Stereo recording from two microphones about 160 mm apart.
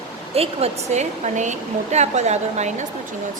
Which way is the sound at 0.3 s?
45° right (ahead or behind).